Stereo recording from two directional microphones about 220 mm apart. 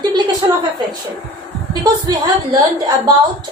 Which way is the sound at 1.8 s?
15° right (ahead or behind).